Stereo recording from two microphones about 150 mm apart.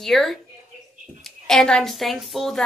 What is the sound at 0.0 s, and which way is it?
A woman's voice, centre (ahead or behind).